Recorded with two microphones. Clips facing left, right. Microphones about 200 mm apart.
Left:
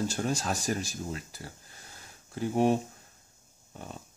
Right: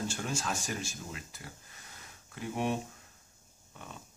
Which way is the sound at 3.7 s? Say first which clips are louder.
Left 5 dB; 35° left (ahead or behind).